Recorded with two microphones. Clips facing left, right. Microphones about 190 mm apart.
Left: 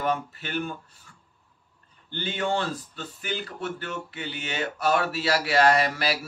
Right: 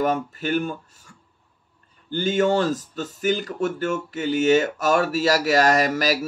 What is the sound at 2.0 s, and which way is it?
Speech, 45° right (ahead or behind).